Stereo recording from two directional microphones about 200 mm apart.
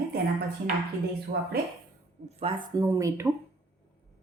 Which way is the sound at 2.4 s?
25° right (ahead or behind).